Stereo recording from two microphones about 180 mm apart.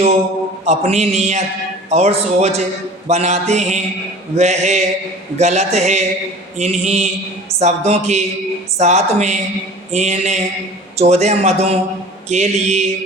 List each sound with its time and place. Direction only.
0.6 s a man's voice: 35° right (ahead or behind)